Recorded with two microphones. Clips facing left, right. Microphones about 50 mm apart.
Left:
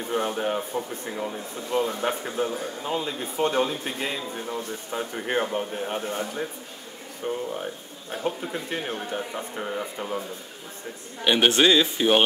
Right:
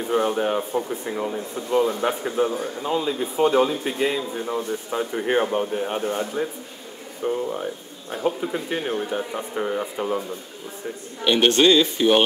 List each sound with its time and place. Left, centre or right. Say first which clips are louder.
0.1 s speech: right 5 dB; centre
4.5 s speech: right 6 dB; right
4.9 s speech: right 4 dB; centre
7.2 s speech: right 4 dB; centre
11.2 s speech: right 2 dB; centre